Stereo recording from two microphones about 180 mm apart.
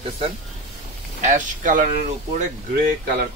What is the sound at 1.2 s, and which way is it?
Speech, 45° right (ahead or behind).